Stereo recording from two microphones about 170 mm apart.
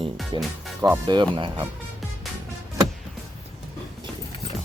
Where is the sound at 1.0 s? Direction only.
25° right (ahead or behind).